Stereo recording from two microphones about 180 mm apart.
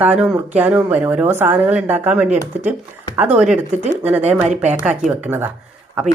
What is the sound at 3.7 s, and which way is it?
Speech, 40° right (ahead or behind).